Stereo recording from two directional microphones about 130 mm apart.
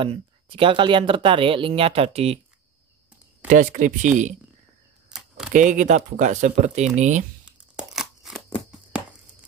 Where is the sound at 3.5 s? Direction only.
85° right.